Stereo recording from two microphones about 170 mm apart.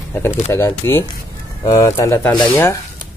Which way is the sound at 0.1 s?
10° left (ahead or behind).